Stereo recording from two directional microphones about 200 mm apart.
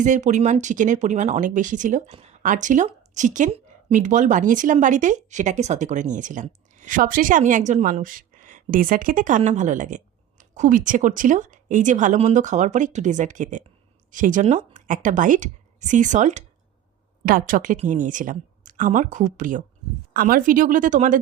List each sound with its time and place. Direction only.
0.0 s speech: 40° right (ahead or behind)